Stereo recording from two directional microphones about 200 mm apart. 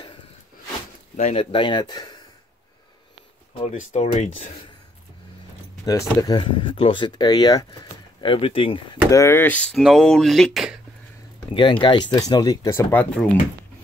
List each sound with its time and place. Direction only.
1.1 s speech: 35° left (ahead or behind)
3.6 s speech: 35° left (ahead or behind)
5.9 s speech: 20° left (ahead or behind)
9.1 s speech: 15° left (ahead or behind)
11.8 s speech: 20° left (ahead or behind); by 13.3 s 5° left (ahead or behind)